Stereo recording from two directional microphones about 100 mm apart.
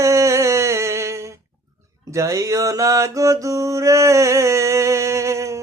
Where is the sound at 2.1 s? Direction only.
30° right (ahead or behind).